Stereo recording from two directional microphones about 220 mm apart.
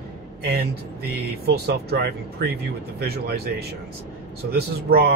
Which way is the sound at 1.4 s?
45° right (ahead or behind).